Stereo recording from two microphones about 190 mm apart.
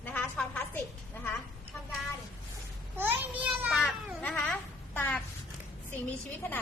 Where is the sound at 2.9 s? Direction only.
10° right (ahead or behind).